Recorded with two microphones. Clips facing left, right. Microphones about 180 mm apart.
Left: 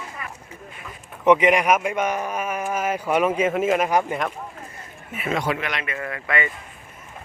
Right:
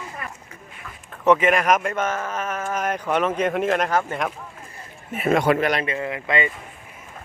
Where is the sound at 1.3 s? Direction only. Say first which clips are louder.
Left 1 dB; 15° left (ahead or behind).